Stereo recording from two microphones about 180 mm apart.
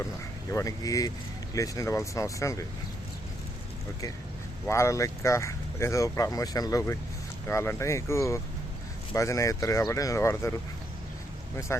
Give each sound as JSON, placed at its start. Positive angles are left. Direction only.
{"t": 0.5, "sound": "speech", "side_deg": 20}
{"t": 4.6, "sound": "speech", "side_deg": 15}
{"t": 11.7, "sound": "speech", "side_deg": 15}